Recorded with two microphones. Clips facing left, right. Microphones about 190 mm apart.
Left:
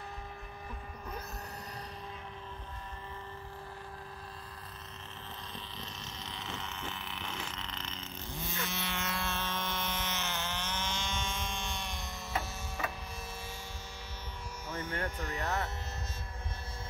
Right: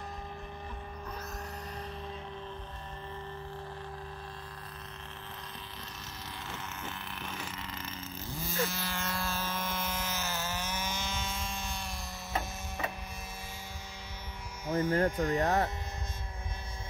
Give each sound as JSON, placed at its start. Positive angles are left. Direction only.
{"t": 6.2, "sound": "a sound", "side_deg": -5}
{"t": 14.8, "sound": "speech", "side_deg": -35}
{"t": 15.2, "sound": "speech", "side_deg": -50}